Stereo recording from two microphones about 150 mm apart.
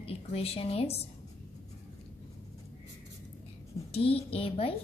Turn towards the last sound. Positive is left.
turn(degrees=40)  # may be behind; listen again after turning